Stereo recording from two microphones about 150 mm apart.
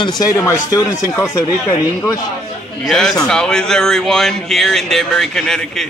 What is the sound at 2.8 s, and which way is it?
A man's voice, centre (ahead or behind).